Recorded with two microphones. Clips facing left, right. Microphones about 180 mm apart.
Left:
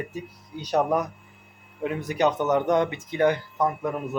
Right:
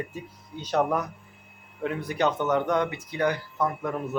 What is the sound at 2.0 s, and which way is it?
Speech, 15° left (ahead or behind).